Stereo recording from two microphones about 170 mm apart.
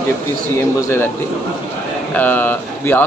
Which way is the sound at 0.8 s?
15° left (ahead or behind).